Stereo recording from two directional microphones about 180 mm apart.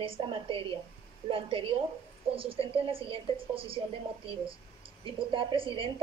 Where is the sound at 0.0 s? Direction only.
30° right (ahead or behind).